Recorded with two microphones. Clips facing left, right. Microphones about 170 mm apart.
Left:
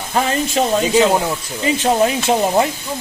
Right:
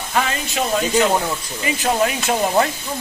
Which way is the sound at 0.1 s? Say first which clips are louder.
Left 4 dB; 35° left (ahead or behind).